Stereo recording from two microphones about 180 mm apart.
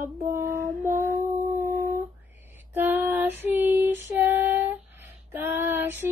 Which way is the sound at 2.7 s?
10° right (ahead or behind).